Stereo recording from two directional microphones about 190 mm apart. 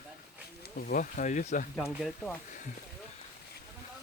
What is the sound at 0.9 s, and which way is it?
Speech, 45° left (ahead or behind).